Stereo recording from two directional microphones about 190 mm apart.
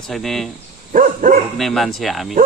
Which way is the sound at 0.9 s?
45° right (ahead or behind).